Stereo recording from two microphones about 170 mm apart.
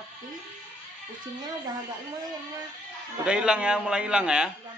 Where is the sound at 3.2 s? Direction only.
5° right (ahead or behind).